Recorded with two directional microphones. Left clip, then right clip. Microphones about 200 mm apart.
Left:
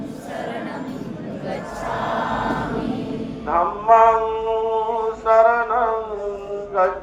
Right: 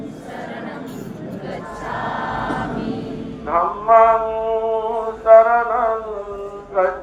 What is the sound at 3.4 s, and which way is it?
Mantra, 30° left (ahead or behind).